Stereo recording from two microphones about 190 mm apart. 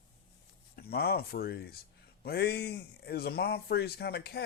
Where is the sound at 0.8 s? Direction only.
55° left (ahead or behind).